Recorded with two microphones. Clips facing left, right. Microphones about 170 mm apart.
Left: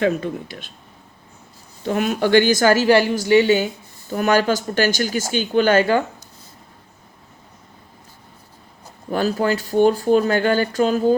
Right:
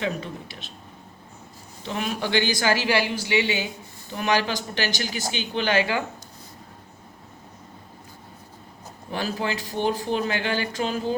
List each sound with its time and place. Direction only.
0.0 s speech: 50° left (ahead or behind)
1.8 s speech: 45° left (ahead or behind)
9.1 s speech: 45° left (ahead or behind)